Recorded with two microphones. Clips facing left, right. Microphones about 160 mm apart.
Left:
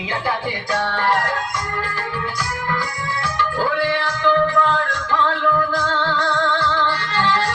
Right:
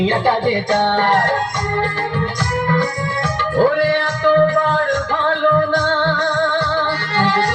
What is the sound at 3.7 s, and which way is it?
Music, 45° right (ahead or behind).